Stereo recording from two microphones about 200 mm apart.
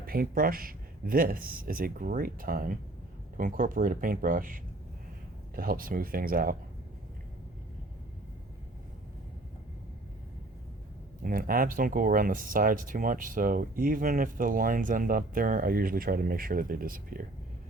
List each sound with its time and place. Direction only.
0.0 s speech: 45° right (ahead or behind)
11.2 s speech: 45° right (ahead or behind)